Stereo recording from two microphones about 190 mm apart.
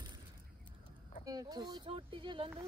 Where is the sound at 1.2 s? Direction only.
20° right (ahead or behind).